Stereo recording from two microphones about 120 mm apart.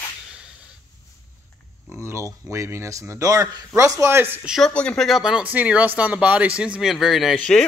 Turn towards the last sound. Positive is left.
turn(degrees=0)  # may be behind; listen again after turning